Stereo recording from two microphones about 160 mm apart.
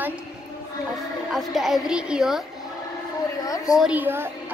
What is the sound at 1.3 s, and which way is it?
A woman's voice, centre (ahead or behind).